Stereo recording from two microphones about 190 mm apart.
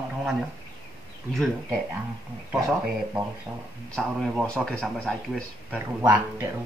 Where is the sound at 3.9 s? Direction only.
5° left (ahead or behind).